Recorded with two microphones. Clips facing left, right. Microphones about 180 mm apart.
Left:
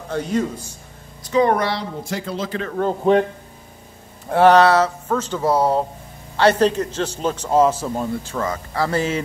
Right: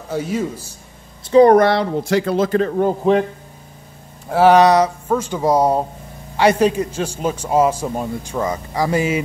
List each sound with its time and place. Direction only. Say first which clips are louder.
0.1 s a man's voice: even; 5° right (ahead or behind)
1.2 s speech: right 8 dB; 35° right (ahead or behind)
1.6 s speech: right 8 dB; 55° right (ahead or behind)
2.0 s speech: right 10 dB; 80° right
2.3 s speech: right 8 dB; 50° right (ahead or behind)
3.0 s speech: left 1 dB; centre (ahead or behind)
4.3 s a man's voice: right 1 dB; 10° right (ahead or behind)